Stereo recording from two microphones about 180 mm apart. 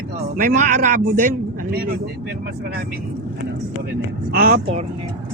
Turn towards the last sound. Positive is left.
turn(degrees=-55)  # may be behind; listen again after turning